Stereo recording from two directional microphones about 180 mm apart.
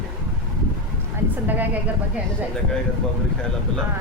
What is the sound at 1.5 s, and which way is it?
Speech, 10° right (ahead or behind).